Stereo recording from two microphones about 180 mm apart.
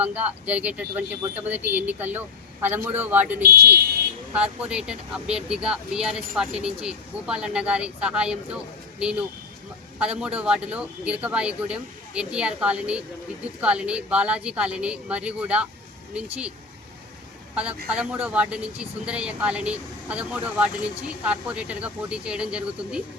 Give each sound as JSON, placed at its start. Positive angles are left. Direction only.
{"t": 0.0, "sound": "a man's voice", "side_deg": -10}
{"t": 3.4, "sound": "speech", "side_deg": -60}
{"t": 4.4, "sound": "a man's voice", "side_deg": -5}
{"t": 17.5, "sound": "a man's voice", "side_deg": -5}